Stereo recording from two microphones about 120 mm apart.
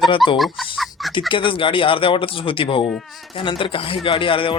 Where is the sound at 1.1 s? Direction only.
45° left (ahead or behind).